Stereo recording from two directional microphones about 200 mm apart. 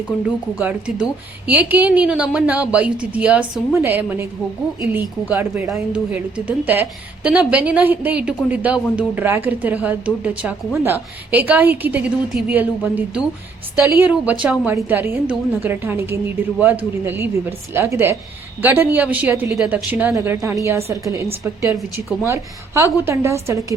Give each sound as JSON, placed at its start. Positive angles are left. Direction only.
{"t": 0.1, "sound": "speech", "side_deg": -5}
{"t": 21.7, "sound": "speech", "side_deg": -5}